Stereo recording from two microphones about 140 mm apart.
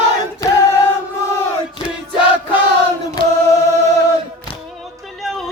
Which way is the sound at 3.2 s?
35° left (ahead or behind).